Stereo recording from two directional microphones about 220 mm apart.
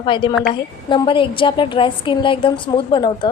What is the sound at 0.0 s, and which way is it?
A woman's voice, 20° left (ahead or behind).